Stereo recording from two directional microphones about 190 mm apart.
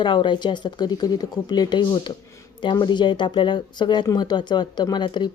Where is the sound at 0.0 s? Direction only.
25° left (ahead or behind).